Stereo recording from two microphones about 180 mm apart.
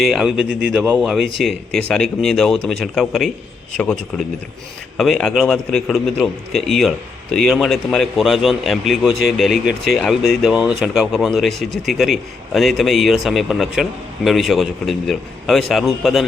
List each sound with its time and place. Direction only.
0.0 s speech: centre (ahead or behind)